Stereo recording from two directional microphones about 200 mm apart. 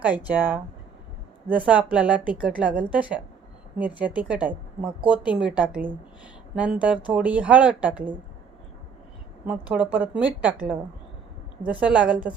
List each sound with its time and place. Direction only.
0.0 s a woman's voice: 10° right (ahead or behind)
9.5 s a woman's voice: 5° right (ahead or behind)